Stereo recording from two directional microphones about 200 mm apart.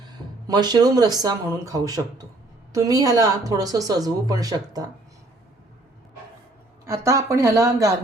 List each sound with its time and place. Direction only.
0.0 s speech: 20° right (ahead or behind)
6.8 s speech: 15° right (ahead or behind)